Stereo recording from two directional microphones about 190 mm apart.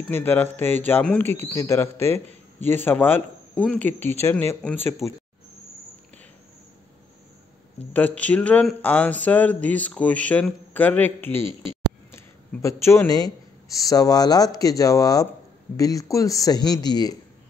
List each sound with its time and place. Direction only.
0.1 s speech: 10° left (ahead or behind)
7.9 s speech: 10° left (ahead or behind)
12.6 s speech: 15° left (ahead or behind)